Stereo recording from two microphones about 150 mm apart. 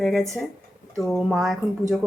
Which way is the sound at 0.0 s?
Centre (ahead or behind).